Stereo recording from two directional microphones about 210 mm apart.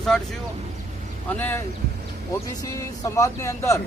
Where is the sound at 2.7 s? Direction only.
15° left (ahead or behind).